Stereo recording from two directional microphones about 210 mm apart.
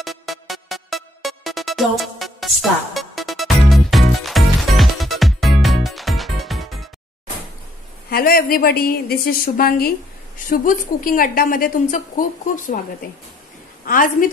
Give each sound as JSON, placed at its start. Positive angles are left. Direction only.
{"t": 0.0, "sound": "music", "side_deg": 0}
{"t": 8.1, "sound": "a woman's voice", "side_deg": 45}
{"t": 13.8, "sound": "a woman's voice", "side_deg": 40}